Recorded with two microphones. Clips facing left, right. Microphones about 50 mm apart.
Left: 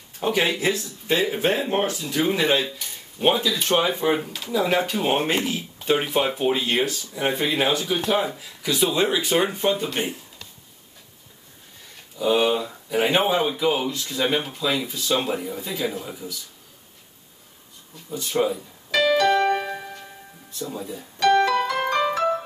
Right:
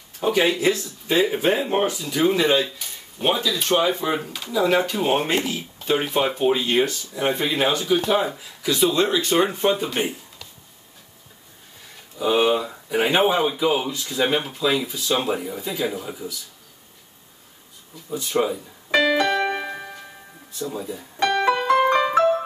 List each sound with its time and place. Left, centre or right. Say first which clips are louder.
0.2 s speech: right 3 dB; centre
1.1 s speech: right 2 dB; centre
2.3 s speech: right 2 dB; centre
12.2 s speech: right 1 dB; centre
18.1 s speech: right 1 dB; centre
18.9 s keyboard: even; right
19.3 s keyboard: left 3 dB; centre
20.5 s speech: right 2 dB; centre
21.5 s piano: right 5 dB; right
21.9 s music: right 4 dB; centre